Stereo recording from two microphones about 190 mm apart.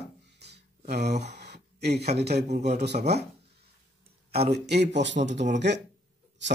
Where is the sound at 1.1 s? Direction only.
35° right (ahead or behind).